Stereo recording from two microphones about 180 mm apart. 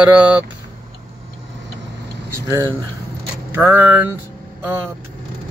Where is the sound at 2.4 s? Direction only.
15° right (ahead or behind).